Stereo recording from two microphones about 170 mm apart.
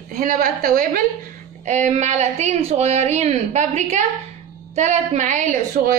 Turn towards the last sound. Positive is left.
turn(degrees=-50)  # may be behind; listen again after turning